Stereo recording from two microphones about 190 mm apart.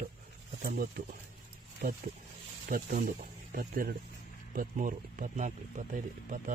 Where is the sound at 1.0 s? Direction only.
45° right (ahead or behind).